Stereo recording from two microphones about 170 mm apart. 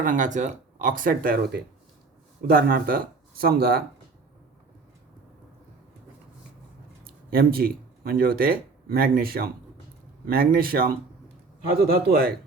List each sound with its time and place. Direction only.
0.0 s speech: 50° right (ahead or behind)
7.0 s speech: 60° right (ahead or behind)